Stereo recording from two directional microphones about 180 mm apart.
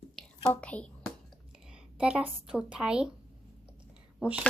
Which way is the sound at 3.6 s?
5° right (ahead or behind).